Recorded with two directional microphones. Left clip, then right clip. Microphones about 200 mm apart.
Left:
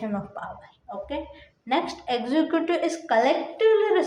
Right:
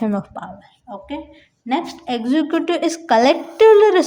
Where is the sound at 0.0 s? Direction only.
50° right (ahead or behind).